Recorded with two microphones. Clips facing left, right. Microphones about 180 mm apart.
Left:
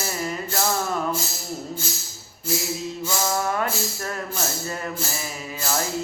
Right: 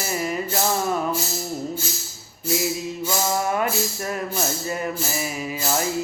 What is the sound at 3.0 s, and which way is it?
Music, 15° right (ahead or behind).